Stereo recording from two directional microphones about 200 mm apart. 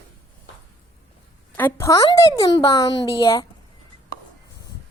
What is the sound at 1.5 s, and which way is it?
A woman's voice, 10° left (ahead or behind).